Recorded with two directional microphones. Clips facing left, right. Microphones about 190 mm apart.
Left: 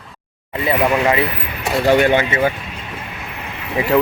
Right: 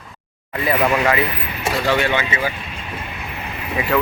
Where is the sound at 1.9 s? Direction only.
45° left (ahead or behind).